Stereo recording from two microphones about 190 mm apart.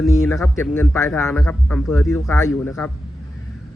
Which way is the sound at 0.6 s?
15° left (ahead or behind).